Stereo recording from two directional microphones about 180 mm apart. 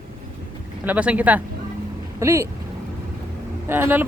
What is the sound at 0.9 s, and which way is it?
Speech, 10° right (ahead or behind).